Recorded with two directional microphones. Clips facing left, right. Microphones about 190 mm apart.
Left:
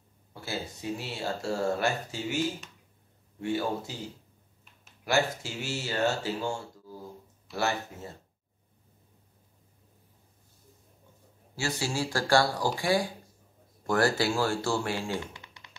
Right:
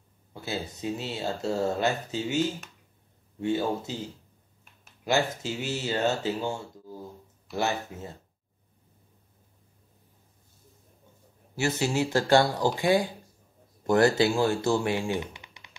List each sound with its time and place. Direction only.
0.3 s speech: 20° right (ahead or behind)
5.0 s speech: 20° right (ahead or behind)
11.5 s speech: 20° right (ahead or behind)